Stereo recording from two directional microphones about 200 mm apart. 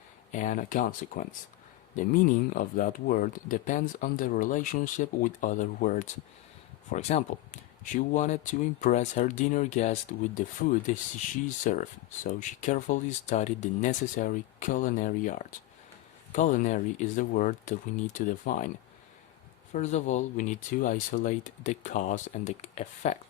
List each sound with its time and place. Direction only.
0.3 s speech: 35° left (ahead or behind)
19.7 s speech: 35° left (ahead or behind)